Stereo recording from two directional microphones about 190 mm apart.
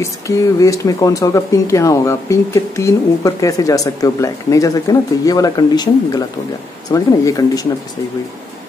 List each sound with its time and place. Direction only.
0.6 s speech: 15° left (ahead or behind)